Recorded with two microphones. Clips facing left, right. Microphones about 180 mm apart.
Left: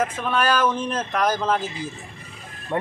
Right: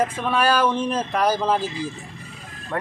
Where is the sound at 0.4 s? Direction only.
35° right (ahead or behind).